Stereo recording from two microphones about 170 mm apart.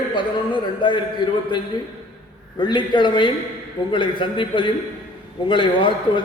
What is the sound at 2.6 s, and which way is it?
A man's voice, 25° left (ahead or behind).